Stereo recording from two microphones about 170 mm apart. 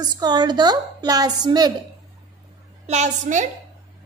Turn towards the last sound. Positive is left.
turn(degrees=-45)  # may be behind; listen again after turning